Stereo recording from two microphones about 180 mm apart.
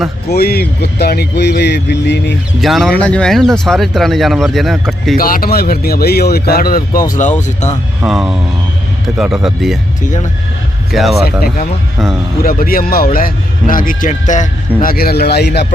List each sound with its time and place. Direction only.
0.3 s speech: 60° left (ahead or behind)
2.6 s speech: centre (ahead or behind)
5.1 s speech: 55° left (ahead or behind)
7.1 s a man's voice: 45° left (ahead or behind)
8.0 s speech: centre (ahead or behind)
10.9 s speech: centre (ahead or behind)
11.2 s a man's voice: 55° left (ahead or behind)